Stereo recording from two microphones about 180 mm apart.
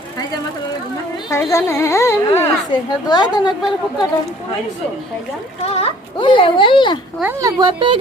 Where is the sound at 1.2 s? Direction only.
15° left (ahead or behind).